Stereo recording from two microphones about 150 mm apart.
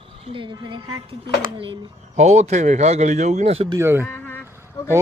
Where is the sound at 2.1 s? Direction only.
45° right (ahead or behind).